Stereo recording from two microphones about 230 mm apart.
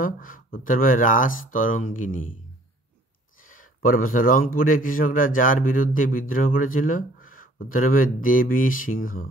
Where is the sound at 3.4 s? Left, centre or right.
Left.